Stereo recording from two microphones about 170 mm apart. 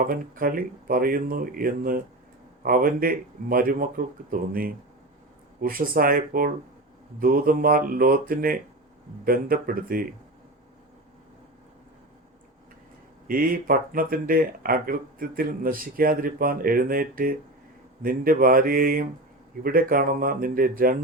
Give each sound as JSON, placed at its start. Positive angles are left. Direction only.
{"t": 0.0, "sound": "speech", "side_deg": -55}
{"t": 13.2, "sound": "speech", "side_deg": -55}